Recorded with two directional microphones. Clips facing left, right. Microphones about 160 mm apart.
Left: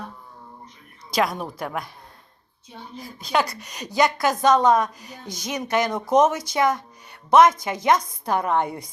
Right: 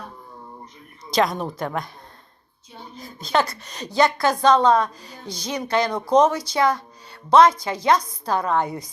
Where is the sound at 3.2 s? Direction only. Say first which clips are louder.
Right 1 dB; 10° left (ahead or behind).